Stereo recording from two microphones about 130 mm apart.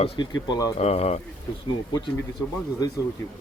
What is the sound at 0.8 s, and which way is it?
Speech, 55° left (ahead or behind).